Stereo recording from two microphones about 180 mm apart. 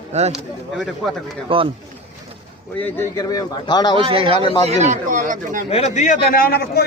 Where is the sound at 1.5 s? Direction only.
30° right (ahead or behind).